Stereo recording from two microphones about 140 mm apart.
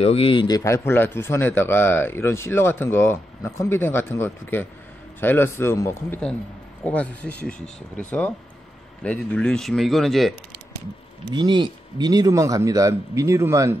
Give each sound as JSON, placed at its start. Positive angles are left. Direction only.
{"t": 0.0, "sound": "a man's voice", "side_deg": 45}
{"t": 11.3, "sound": "a man's voice", "side_deg": -35}